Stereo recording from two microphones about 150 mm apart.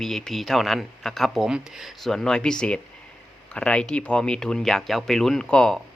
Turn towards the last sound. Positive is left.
turn(degrees=5)  # may be behind; listen again after turning